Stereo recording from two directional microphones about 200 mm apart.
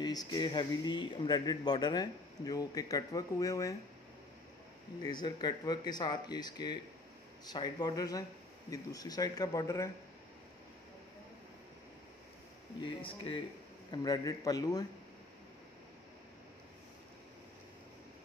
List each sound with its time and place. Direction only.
0.0 s a man's voice: 20° left (ahead or behind)
5.0 s a man's voice: 20° left (ahead or behind)
12.8 s a man's voice: 25° left (ahead or behind)